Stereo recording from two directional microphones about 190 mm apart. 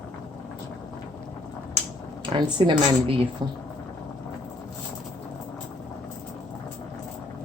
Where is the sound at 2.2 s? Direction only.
25° right (ahead or behind).